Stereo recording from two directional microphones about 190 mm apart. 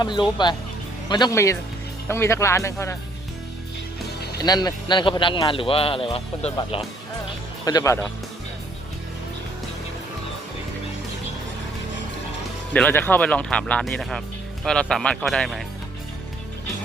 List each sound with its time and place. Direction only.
0.0 s speech: 25° left (ahead or behind)
4.4 s speech: 20° left (ahead or behind)
7.6 s speech: 20° left (ahead or behind)
12.7 s speech: 10° left (ahead or behind)